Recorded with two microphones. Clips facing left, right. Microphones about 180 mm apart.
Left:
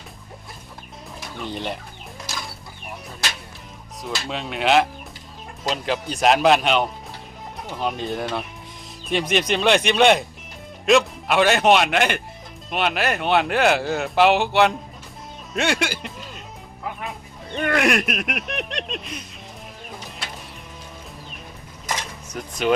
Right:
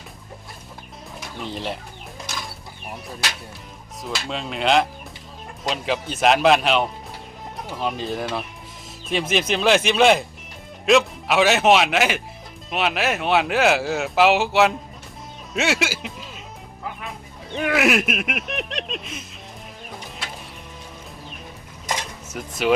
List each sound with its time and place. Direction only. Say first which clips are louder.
1.5 s speech: even; centre (ahead or behind)
4.0 s speech: even; centre (ahead or behind)
17.5 s speech: right 1 dB; 5° right (ahead or behind)
22.3 s speech: even; 5° right (ahead or behind)